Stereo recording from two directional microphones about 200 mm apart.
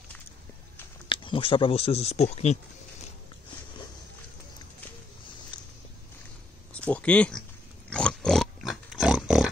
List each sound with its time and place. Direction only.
1.0 s speech: 25° left (ahead or behind)
5.5 s walk: 25° left (ahead or behind)
6.7 s a sound: 5° left (ahead or behind)
7.9 s pig: 5° left (ahead or behind)